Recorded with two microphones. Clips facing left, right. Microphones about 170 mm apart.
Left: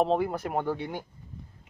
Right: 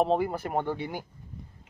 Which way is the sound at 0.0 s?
5° right (ahead or behind).